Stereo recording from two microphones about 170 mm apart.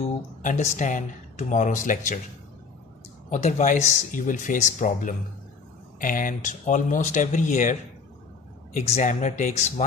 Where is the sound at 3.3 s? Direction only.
45° left (ahead or behind).